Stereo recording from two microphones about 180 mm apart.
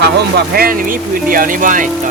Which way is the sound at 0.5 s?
55° right (ahead or behind).